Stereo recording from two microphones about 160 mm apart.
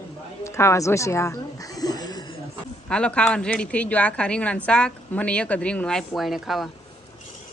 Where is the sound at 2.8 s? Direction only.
5° left (ahead or behind).